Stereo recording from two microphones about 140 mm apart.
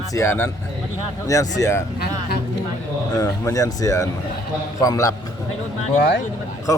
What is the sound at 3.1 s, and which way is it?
Speech, 25° left (ahead or behind).